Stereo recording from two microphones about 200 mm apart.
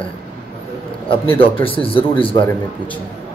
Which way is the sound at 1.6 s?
25° left (ahead or behind).